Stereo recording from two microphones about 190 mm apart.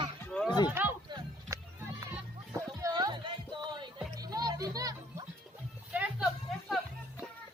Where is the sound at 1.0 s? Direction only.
25° right (ahead or behind).